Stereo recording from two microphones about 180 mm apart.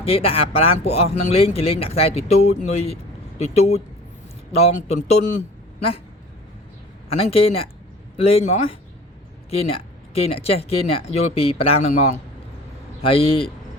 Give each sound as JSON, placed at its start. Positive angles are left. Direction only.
{"t": 0.0, "sound": "speech", "side_deg": 35}
{"t": 7.2, "sound": "speech", "side_deg": 35}
{"t": 13.0, "sound": "speech", "side_deg": 30}